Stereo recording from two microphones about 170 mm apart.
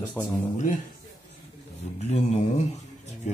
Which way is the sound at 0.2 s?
20° left (ahead or behind).